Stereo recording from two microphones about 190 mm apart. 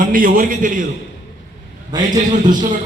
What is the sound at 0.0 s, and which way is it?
Speech, 45° right (ahead or behind).